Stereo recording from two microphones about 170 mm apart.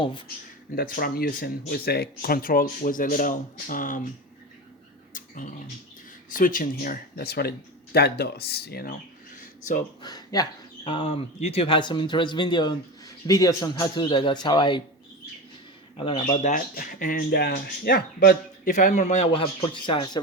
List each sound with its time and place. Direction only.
0.0 s speech: 30° left (ahead or behind)
0.8 s speech: 60° left (ahead or behind)
5.1 s a sound: 50° left (ahead or behind)
6.3 s speech: 55° left (ahead or behind)
10.0 s speech: 25° left (ahead or behind)
16.0 s speech: 30° left (ahead or behind)